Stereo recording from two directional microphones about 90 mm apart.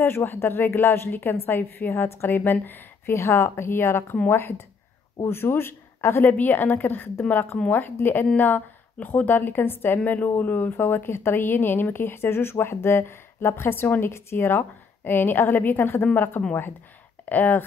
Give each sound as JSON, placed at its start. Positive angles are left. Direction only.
{"t": 0.0, "sound": "a woman's voice", "side_deg": 25}